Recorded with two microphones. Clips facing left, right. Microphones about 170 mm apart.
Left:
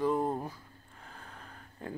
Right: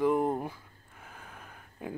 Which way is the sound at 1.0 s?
10° right (ahead or behind).